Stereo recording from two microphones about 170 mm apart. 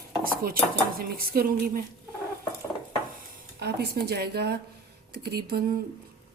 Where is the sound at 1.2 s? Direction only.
60° right (ahead or behind).